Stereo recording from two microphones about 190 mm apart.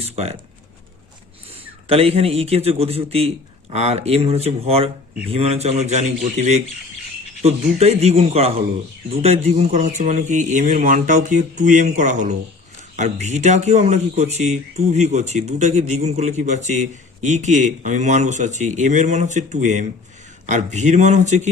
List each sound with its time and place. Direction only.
0.0 s speech: 35° right (ahead or behind)
1.9 s speech: 30° right (ahead or behind)